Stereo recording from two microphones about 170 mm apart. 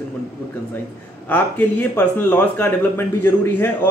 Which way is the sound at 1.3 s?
10° left (ahead or behind).